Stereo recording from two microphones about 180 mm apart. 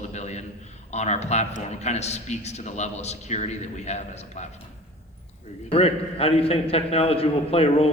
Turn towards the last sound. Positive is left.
turn(degrees=35)  # may be behind; listen again after turning